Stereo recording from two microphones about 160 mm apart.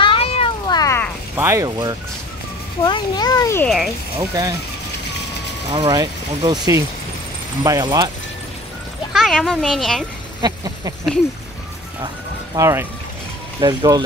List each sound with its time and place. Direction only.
0.0 s cat: 35° left (ahead or behind)
0.7 s a sound: 25° left (ahead or behind)
1.3 s speech: 15° right (ahead or behind)
2.8 s a child's voice: 25° left (ahead or behind)
3.6 s speech: centre (ahead or behind)
4.2 s speech: 20° right (ahead or behind)
5.7 s speech: 25° right (ahead or behind)
9.1 s speech: centre (ahead or behind)
10.4 s a sound: 25° right (ahead or behind)
12.5 s speech: 15° right (ahead or behind)